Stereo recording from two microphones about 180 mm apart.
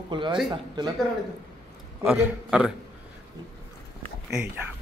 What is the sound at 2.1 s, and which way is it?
Speech, 10° right (ahead or behind).